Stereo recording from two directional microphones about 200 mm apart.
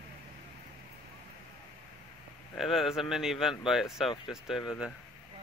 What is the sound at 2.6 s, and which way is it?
Speech, centre (ahead or behind).